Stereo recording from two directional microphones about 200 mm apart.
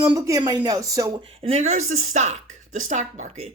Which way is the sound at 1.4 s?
35° right (ahead or behind).